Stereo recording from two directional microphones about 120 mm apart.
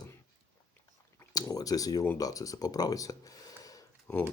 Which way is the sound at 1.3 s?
30° left (ahead or behind).